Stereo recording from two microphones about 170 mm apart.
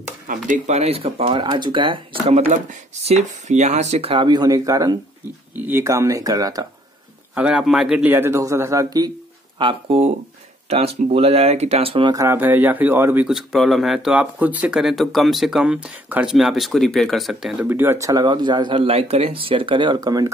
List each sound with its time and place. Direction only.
0.3 s speech: 45° right (ahead or behind); by 2.3 s 30° right (ahead or behind)
2.3 s speech: 45° right (ahead or behind); by 6.7 s 20° right (ahead or behind)
7.3 s speech: 5° right (ahead or behind); by 9.1 s 20° right (ahead or behind)
9.6 s speech: 30° right (ahead or behind)